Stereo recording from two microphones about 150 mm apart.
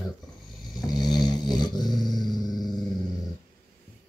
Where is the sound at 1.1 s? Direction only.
25° left (ahead or behind).